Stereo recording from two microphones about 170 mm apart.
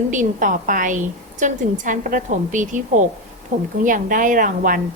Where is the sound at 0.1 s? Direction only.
50° right (ahead or behind).